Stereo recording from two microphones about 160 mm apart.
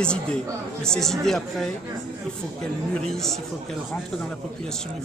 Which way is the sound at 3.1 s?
Centre (ahead or behind).